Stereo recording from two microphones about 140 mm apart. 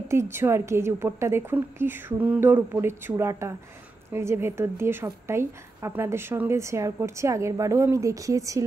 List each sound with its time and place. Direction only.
0.1 s a woman's voice: 20° right (ahead or behind)